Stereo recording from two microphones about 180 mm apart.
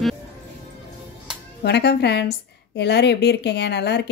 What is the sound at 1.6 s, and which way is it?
A woman's voice, 70° left (ahead or behind).